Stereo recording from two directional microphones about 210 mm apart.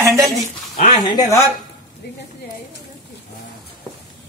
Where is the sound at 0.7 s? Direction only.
30° left (ahead or behind).